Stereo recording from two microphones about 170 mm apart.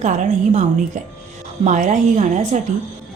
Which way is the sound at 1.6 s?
45° right (ahead or behind).